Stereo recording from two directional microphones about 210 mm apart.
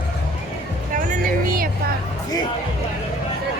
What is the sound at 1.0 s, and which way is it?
Music, 40° right (ahead or behind).